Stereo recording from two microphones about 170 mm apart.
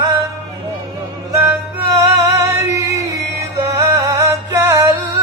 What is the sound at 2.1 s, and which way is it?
Music, 20° right (ahead or behind).